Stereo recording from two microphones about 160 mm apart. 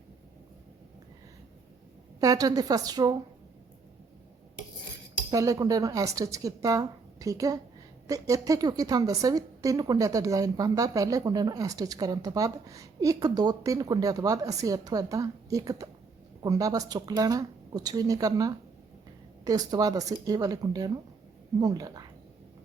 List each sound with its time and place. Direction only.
2.2 s a woman's voice: 20° right (ahead or behind)
5.3 s a woman's voice: 20° right (ahead or behind)